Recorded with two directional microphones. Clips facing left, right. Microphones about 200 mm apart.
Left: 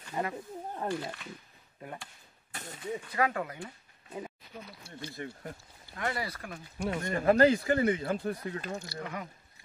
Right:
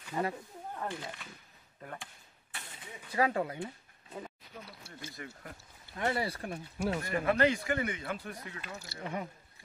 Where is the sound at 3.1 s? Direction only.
25° right (ahead or behind).